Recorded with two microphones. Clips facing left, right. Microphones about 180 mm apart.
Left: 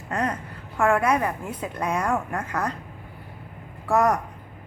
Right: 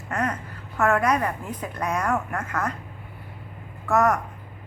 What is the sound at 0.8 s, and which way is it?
Speech, 10° left (ahead or behind).